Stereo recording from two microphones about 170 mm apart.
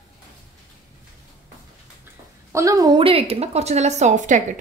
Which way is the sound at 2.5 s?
20° right (ahead or behind).